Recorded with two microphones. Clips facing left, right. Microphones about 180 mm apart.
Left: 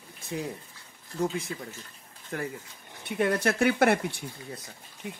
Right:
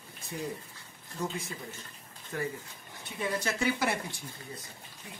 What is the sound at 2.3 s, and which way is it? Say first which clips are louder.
Speech: left 1 dB; 70° left (ahead or behind).